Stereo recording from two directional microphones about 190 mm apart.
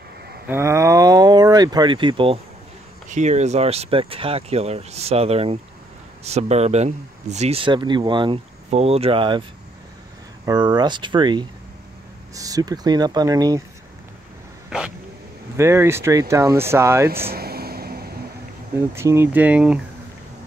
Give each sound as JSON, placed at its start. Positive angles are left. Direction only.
{"t": 0.5, "sound": "speech", "side_deg": -15}
{"t": 3.1, "sound": "speech", "side_deg": -40}
{"t": 10.4, "sound": "speech", "side_deg": -20}
{"t": 15.5, "sound": "speech", "side_deg": -15}
{"t": 17.3, "sound": "vehicle", "side_deg": -55}
{"t": 18.8, "sound": "speech", "side_deg": -15}